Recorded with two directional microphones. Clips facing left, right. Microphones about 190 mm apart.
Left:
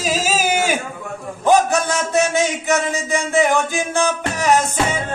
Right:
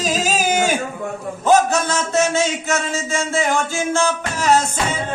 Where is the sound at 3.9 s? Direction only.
15° left (ahead or behind).